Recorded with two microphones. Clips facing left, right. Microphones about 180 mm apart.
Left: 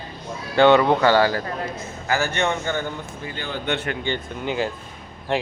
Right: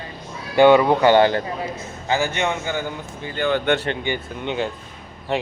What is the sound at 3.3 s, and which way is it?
Speech, 60° right (ahead or behind).